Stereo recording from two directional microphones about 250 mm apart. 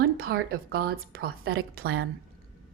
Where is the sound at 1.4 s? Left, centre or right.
Right.